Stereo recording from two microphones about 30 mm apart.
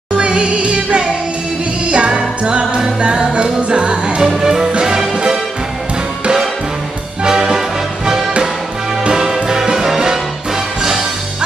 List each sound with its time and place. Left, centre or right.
0.2 s music: right
1.9 s music: right
4.2 s music: centre
5.1 s music: right
8.0 s music: right